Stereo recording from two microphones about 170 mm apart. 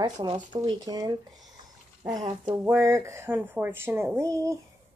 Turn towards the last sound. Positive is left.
turn(degrees=-15)  # may be behind; listen again after turning